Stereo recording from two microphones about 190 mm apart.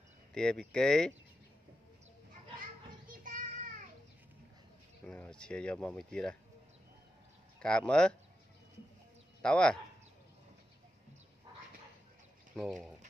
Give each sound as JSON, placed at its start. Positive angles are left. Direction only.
{"t": 0.3, "sound": "speech", "side_deg": 5}
{"t": 3.1, "sound": "child singing", "side_deg": -45}
{"t": 5.0, "sound": "speech", "side_deg": 5}
{"t": 7.6, "sound": "speech", "side_deg": 5}
{"t": 9.4, "sound": "speech", "side_deg": 5}
{"t": 12.5, "sound": "speech", "side_deg": 0}